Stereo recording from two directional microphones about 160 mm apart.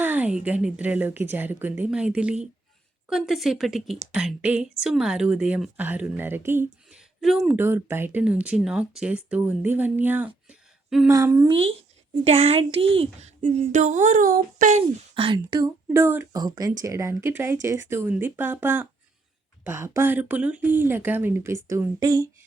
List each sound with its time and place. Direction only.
0.0 s a woman's voice: 10° right (ahead or behind)
7.2 s a woman's voice: centre (ahead or behind)
7.5 s speech: 15° right (ahead or behind)
11.1 s speech: 20° right (ahead or behind)
12.1 s speech: 40° right (ahead or behind)
15.1 s speech: 35° right (ahead or behind)
15.9 s speech: 15° right (ahead or behind)